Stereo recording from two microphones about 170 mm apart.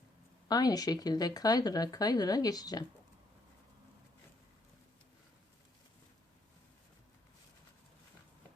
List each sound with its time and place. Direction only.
0.4 s speech: 20° left (ahead or behind)